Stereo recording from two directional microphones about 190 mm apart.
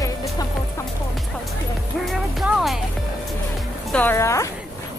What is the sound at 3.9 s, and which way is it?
Speech, 10° left (ahead or behind).